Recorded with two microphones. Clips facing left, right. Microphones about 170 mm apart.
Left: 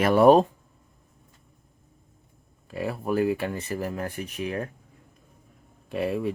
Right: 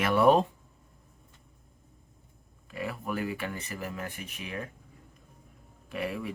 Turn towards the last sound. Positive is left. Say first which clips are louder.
# left 7 dB
turn(degrees=30)  # may be behind; listen again after turning